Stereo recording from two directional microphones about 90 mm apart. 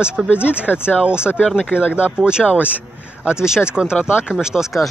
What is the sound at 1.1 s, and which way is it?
Speech, 10° right (ahead or behind).